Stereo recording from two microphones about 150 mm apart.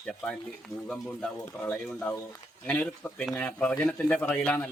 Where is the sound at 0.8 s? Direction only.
5° left (ahead or behind).